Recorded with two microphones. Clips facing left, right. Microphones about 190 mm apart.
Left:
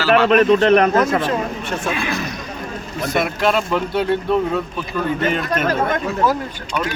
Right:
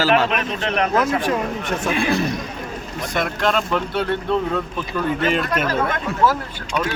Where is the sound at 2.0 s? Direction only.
30° right (ahead or behind).